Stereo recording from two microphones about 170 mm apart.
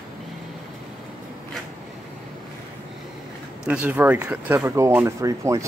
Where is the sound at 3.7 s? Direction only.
10° right (ahead or behind).